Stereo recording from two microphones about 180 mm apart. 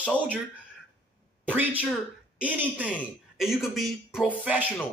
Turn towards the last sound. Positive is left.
turn(degrees=-10)  # may be behind; listen again after turning